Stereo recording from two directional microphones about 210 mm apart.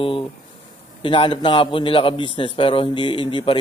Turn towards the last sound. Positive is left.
turn(degrees=25)  # may be behind; listen again after turning